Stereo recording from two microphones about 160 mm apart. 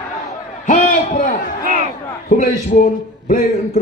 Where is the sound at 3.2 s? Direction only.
45° left (ahead or behind).